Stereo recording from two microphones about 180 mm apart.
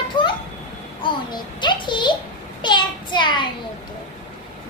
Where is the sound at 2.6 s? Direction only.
25° left (ahead or behind).